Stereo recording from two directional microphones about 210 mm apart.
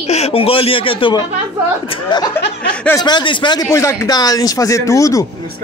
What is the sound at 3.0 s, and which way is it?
Speech, 20° left (ahead or behind).